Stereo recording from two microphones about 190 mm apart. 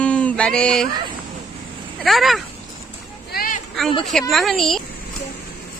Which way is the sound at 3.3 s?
50° left (ahead or behind).